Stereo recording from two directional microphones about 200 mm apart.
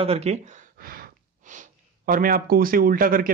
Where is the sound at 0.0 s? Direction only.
30° right (ahead or behind).